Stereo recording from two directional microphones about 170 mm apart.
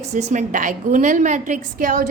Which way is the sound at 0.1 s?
45° right (ahead or behind).